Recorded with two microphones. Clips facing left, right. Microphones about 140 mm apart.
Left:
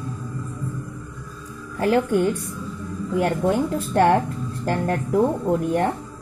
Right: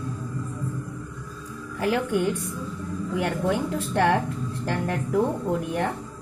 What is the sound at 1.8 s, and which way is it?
Speech, 45° left (ahead or behind).